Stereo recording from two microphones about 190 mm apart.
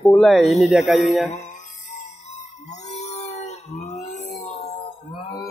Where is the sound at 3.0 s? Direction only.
35° left (ahead or behind).